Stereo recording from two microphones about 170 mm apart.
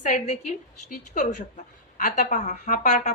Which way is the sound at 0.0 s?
45° left (ahead or behind).